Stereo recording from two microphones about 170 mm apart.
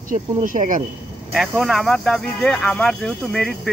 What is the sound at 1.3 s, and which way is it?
Speech, centre (ahead or behind).